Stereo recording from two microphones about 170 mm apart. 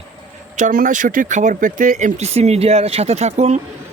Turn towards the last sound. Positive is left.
turn(degrees=-40)  # may be behind; listen again after turning